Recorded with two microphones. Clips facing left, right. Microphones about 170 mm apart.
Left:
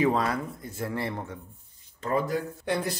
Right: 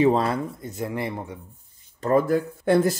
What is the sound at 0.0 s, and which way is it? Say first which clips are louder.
Speech: right 5 dB; 30° right (ahead or behind).